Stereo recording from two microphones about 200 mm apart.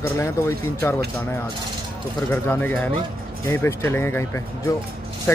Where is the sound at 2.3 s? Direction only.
10° left (ahead or behind).